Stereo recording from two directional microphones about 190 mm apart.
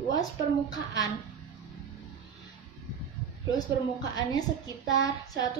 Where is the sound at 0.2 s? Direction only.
20° left (ahead or behind).